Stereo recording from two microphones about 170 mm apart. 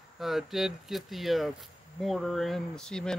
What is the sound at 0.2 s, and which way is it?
Speech, centre (ahead or behind).